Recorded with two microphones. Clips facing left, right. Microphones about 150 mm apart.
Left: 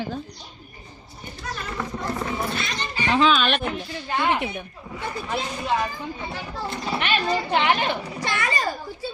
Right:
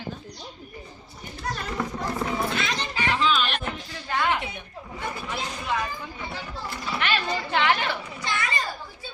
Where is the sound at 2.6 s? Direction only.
90° right.